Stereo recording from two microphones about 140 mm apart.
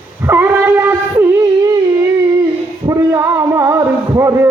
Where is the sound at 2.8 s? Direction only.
25° right (ahead or behind).